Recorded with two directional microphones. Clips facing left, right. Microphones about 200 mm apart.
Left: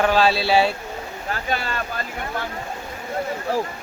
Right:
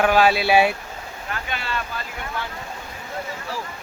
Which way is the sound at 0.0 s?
10° right (ahead or behind).